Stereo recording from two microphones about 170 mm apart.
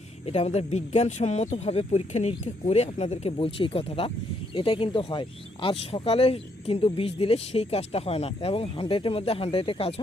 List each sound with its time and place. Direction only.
0.3 s speech: 40° left (ahead or behind)